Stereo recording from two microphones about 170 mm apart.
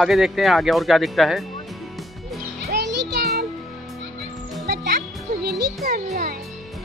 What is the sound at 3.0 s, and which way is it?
Music, 80° right.